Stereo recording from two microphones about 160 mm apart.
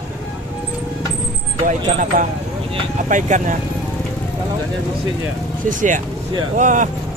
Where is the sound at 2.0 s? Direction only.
55° right (ahead or behind).